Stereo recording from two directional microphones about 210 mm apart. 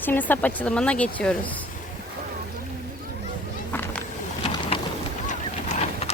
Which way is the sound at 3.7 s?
10° left (ahead or behind).